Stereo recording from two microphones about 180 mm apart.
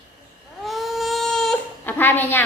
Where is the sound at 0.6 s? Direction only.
Centre (ahead or behind).